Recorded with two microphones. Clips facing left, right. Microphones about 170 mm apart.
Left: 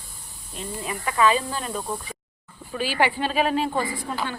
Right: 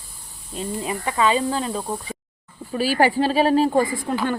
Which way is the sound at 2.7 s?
40° right (ahead or behind).